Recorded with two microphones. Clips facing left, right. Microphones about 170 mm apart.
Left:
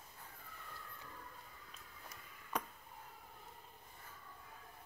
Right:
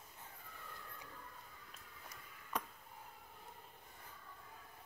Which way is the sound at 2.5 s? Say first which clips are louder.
Left 1 dB; centre (ahead or behind).